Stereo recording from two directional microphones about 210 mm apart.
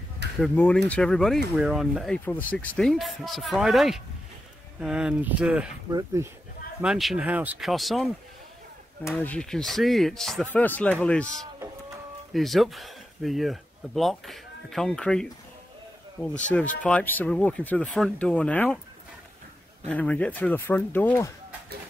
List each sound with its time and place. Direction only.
0.4 s speech: 5° left (ahead or behind)
5.9 s speech: 15° right (ahead or behind)
6.8 s speech: centre (ahead or behind)
9.2 s speech: 5° left (ahead or behind)
12.3 s speech: centre (ahead or behind)
19.9 s speech: 5° left (ahead or behind)